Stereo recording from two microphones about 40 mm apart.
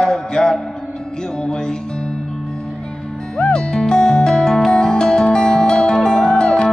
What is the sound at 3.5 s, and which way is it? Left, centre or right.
Music, centre.